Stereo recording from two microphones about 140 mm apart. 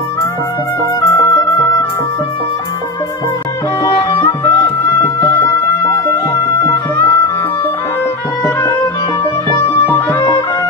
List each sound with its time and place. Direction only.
1.0 s music: 20° left (ahead or behind)
9.8 s music: 15° left (ahead or behind)